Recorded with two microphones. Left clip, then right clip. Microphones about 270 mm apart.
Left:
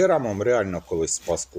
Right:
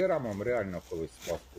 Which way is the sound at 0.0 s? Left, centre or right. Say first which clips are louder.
Left 9 dB; centre.